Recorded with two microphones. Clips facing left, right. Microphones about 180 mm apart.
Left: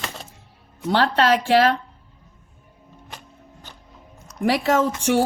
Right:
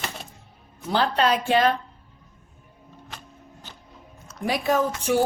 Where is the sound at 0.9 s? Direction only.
75° left (ahead or behind).